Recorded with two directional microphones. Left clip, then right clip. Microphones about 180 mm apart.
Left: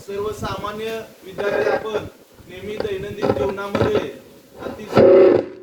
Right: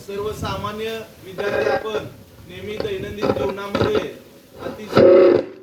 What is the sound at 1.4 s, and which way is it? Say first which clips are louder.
A man's voice: left 1 dB; 35° right (ahead or behind).